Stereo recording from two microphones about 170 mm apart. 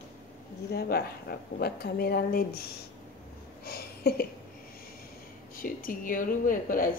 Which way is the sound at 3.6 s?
65° left (ahead or behind).